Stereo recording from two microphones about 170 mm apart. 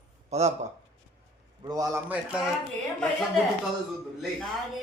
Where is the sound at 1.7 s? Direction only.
20° right (ahead or behind).